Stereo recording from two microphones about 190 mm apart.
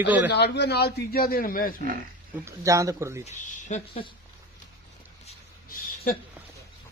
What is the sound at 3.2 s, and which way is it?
Speech, 40° left (ahead or behind).